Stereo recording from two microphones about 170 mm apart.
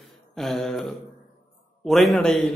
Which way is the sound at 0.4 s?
Centre (ahead or behind).